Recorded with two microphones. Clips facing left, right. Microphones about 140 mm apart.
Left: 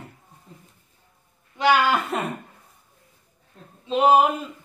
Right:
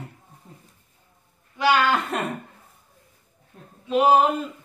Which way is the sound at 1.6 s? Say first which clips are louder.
Left 1 dB; 15° left (ahead or behind).